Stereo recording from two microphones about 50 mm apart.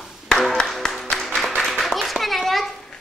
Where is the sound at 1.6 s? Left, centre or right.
Centre.